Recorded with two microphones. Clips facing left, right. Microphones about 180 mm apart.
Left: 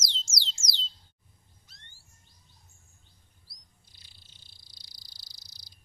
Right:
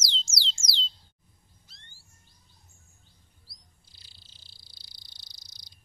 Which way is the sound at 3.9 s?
30° right (ahead or behind).